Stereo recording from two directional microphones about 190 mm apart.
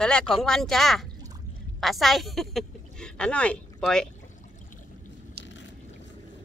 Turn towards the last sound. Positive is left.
turn(degrees=70)  # may be behind; listen again after turning